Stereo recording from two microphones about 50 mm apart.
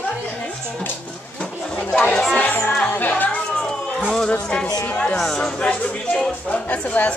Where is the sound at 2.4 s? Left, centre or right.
Left.